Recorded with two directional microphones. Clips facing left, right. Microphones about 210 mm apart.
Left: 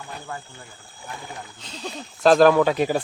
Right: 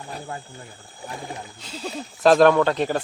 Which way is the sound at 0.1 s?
30° right (ahead or behind).